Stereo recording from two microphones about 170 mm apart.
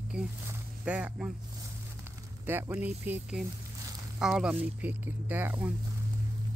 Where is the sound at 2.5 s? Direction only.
10° right (ahead or behind).